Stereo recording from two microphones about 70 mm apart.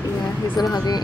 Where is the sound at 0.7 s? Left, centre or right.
Left.